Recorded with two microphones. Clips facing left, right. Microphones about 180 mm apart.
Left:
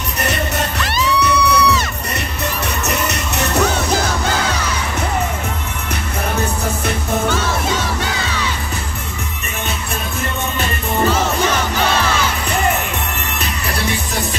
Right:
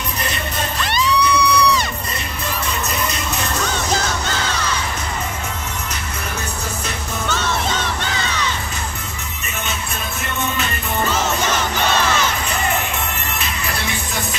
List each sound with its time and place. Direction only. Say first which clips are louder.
0.8 s music: even; 5° left (ahead or behind)
2.8 s music: left 3 dB; 70° left (ahead or behind)